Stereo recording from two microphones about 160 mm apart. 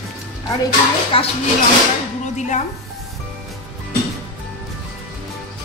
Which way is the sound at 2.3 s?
50° left (ahead or behind).